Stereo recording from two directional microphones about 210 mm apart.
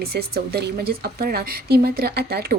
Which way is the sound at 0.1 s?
45° right (ahead or behind).